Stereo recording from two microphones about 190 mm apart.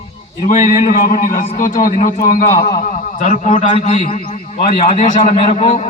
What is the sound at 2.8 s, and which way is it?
A man's voice, 40° left (ahead or behind).